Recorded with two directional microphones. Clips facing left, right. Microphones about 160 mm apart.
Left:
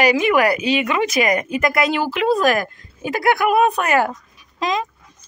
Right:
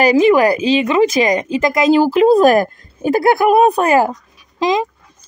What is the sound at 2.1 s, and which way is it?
Speech, 35° right (ahead or behind).